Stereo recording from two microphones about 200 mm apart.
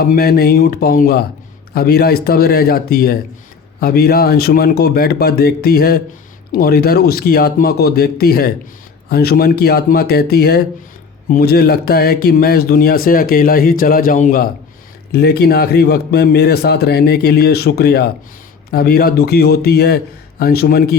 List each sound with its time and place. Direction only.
0.0 s a man's voice: 50° left (ahead or behind)
15.1 s a man's voice: 55° left (ahead or behind)